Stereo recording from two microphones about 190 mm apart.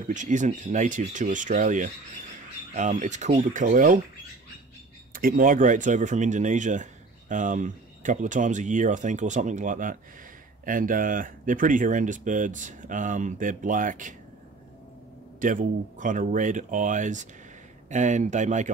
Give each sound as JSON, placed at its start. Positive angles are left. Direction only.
{"t": 0.1, "sound": "speech", "side_deg": -40}
{"t": 5.1, "sound": "speech", "side_deg": -50}
{"t": 15.4, "sound": "speech", "side_deg": -45}